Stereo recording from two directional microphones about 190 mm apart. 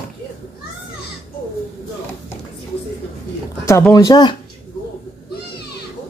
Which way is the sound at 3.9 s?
20° left (ahead or behind).